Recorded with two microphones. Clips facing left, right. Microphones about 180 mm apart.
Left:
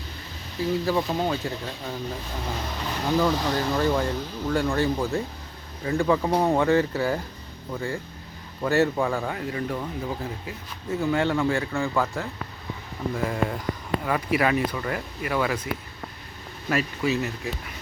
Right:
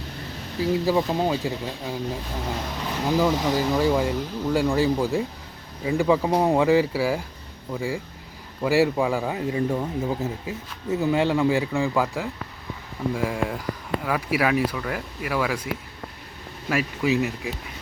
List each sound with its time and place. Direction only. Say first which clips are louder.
0.6 s speech: right 2 dB; 10° right (ahead or behind)
3.1 s speech: right 2 dB; 10° right (ahead or behind)